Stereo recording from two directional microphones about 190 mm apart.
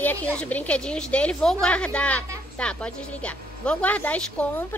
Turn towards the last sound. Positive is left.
turn(degrees=5)  # may be behind; listen again after turning